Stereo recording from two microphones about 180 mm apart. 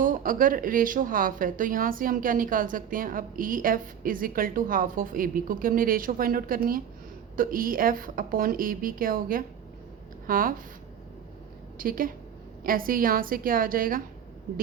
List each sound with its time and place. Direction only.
0.0 s a woman's voice: 50° right (ahead or behind)
11.8 s a woman's voice: 50° right (ahead or behind)